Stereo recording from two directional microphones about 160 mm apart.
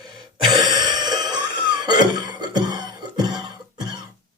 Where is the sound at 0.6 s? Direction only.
25° right (ahead or behind).